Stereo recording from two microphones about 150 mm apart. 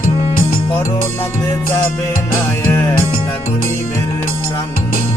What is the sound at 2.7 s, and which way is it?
Music, 15° left (ahead or behind).